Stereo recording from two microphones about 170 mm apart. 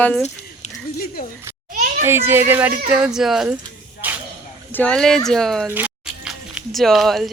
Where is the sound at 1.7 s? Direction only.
55° right (ahead or behind).